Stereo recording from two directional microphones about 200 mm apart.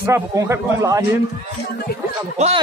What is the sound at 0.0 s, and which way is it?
A man's voice, 15° right (ahead or behind).